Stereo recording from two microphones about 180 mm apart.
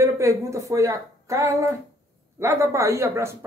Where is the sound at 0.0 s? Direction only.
15° right (ahead or behind).